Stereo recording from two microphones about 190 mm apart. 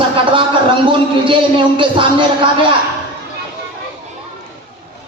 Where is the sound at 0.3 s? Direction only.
25° right (ahead or behind).